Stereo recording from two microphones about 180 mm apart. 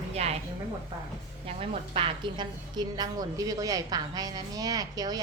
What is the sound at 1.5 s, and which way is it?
A woman's voice, 30° right (ahead or behind).